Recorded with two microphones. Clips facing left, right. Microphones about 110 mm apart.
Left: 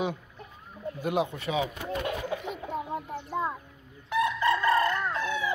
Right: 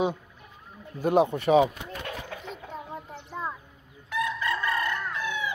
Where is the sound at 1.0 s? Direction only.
40° right (ahead or behind).